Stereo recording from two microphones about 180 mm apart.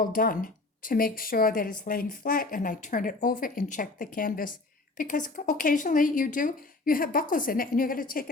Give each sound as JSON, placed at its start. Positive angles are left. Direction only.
{"t": 0.0, "sound": "speech", "side_deg": 50}